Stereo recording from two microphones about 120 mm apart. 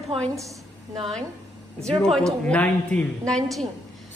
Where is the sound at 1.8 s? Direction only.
5° left (ahead or behind).